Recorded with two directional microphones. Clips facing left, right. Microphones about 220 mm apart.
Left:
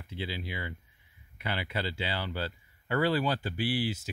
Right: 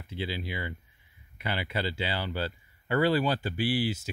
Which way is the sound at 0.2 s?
10° right (ahead or behind).